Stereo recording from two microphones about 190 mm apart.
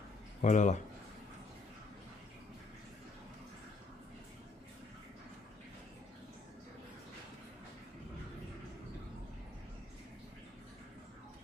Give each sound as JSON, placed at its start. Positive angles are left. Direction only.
{"t": 0.4, "sound": "speech", "side_deg": 40}